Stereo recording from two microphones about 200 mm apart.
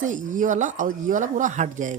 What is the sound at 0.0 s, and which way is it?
Speech, 40° right (ahead or behind).